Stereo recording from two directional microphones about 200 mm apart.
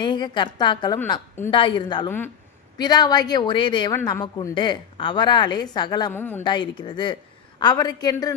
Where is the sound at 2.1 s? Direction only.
10° left (ahead or behind).